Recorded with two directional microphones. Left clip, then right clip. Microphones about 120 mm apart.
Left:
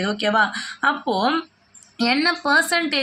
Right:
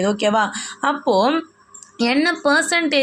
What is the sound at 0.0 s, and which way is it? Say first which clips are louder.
Speech: right 2 dB; 25° right (ahead or behind).